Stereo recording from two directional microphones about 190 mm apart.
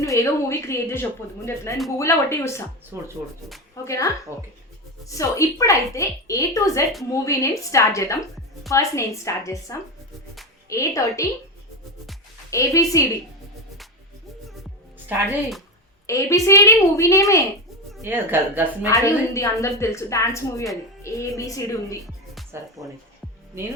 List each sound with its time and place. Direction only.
0.0 s a woman's voice: 15° left (ahead or behind)
2.9 s a woman's voice: 15° right (ahead or behind)
3.8 s a woman's voice: 15° left (ahead or behind)
12.5 s a woman's voice: 15° left (ahead or behind)
15.3 s speech: centre (ahead or behind)
16.0 s a woman's voice: 15° left (ahead or behind)
18.0 s a woman's voice: 10° right (ahead or behind)
18.9 s a woman's voice: 15° left (ahead or behind)
22.8 s a woman's voice: 15° right (ahead or behind)